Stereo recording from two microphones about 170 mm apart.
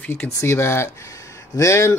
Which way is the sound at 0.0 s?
10° left (ahead or behind).